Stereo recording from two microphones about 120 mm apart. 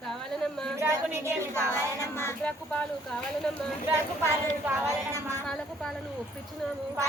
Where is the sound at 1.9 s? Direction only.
25° left (ahead or behind).